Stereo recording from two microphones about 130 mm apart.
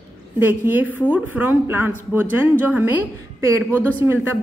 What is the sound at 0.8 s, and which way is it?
Speech, 15° left (ahead or behind).